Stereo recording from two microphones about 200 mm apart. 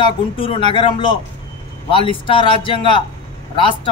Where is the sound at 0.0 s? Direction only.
25° left (ahead or behind).